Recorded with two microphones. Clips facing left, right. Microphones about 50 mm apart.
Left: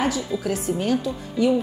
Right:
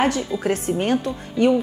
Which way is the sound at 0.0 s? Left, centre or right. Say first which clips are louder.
Right 3 dB; right.